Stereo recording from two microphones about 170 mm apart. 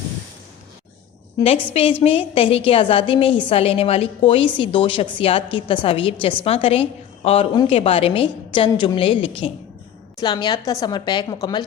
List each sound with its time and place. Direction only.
1.7 s a woman's voice: 30° left (ahead or behind)